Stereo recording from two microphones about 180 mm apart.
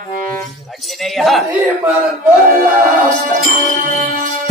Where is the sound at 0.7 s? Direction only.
Centre (ahead or behind).